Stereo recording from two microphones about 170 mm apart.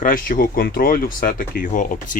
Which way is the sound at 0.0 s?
55° left (ahead or behind).